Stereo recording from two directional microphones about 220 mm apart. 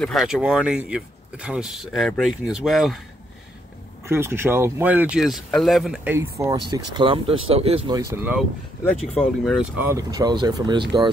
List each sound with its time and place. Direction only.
0.0 s speech: centre (ahead or behind)
4.0 s speech: 10° right (ahead or behind)
8.1 s speech: 5° right (ahead or behind)
9.8 s speech: 15° right (ahead or behind)